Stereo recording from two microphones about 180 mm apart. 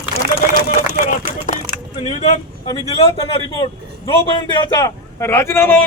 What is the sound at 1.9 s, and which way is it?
Speech, 30° left (ahead or behind).